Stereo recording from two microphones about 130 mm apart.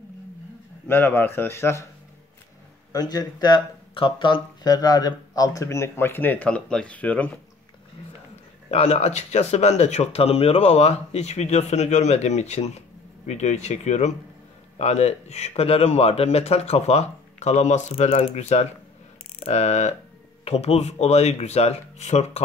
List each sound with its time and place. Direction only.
0.8 s speech: 15° left (ahead or behind)
2.9 s speech: 30° left (ahead or behind); by 7.3 s 10° left (ahead or behind)
8.6 s speech: 55° left (ahead or behind)